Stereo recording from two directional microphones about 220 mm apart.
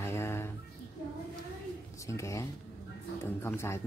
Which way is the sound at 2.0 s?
15° left (ahead or behind).